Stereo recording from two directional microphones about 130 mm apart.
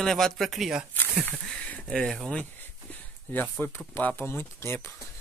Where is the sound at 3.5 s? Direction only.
15° left (ahead or behind).